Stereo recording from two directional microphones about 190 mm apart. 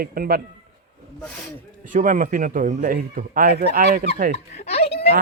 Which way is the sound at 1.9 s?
45° right (ahead or behind).